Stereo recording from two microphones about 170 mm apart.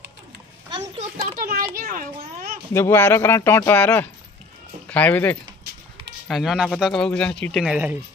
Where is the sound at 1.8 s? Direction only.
55° right (ahead or behind).